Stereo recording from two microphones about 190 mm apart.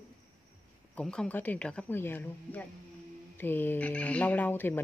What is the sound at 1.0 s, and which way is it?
Speech, 5° left (ahead or behind).